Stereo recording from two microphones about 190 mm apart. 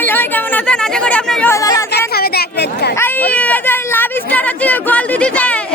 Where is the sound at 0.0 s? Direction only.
10° left (ahead or behind).